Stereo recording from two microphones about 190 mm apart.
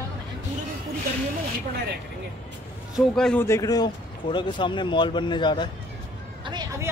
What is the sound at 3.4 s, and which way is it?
Speech, 15° left (ahead or behind).